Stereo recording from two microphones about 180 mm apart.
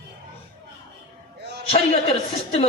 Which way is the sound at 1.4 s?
70° right (ahead or behind).